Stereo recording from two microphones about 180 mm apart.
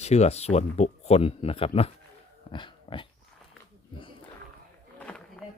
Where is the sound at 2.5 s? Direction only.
25° left (ahead or behind).